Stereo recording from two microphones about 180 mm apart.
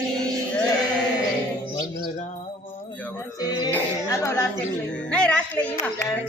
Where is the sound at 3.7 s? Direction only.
15° left (ahead or behind).